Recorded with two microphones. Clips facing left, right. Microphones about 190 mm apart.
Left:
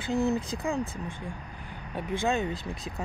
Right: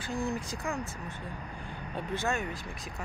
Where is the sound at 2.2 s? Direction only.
20° left (ahead or behind).